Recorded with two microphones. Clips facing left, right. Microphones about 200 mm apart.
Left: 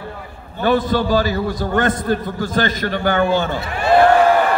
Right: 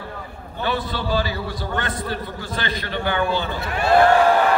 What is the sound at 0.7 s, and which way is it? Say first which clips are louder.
A man's voice: left 8 dB; 45° left (ahead or behind).